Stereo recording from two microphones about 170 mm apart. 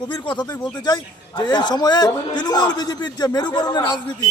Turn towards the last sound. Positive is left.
turn(degrees=25)  # may be behind; listen again after turning